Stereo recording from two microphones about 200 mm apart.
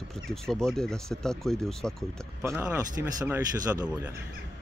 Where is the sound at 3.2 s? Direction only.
20° right (ahead or behind).